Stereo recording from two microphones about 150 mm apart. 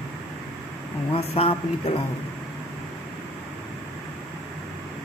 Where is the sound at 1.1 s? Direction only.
40° left (ahead or behind).